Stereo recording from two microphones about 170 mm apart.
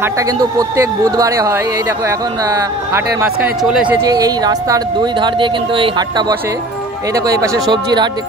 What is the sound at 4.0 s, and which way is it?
Speech, 20° right (ahead or behind).